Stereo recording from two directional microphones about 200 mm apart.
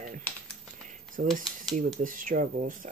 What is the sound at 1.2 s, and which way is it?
Speech, 40° right (ahead or behind).